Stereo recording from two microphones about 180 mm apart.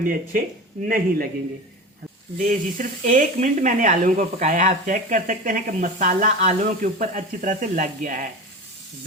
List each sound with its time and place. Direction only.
0.0 s speech: 50° right (ahead or behind)
2.4 s speech: 45° right (ahead or behind)